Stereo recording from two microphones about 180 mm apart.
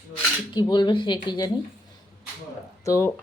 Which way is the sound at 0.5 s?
25° left (ahead or behind).